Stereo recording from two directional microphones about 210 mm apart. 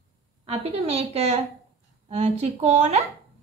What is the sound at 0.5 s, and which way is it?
A woman's voice, 30° right (ahead or behind).